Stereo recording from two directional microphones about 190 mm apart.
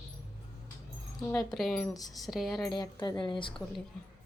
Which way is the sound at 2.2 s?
Centre (ahead or behind).